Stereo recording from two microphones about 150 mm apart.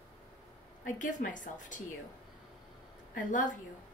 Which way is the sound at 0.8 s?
60° left (ahead or behind).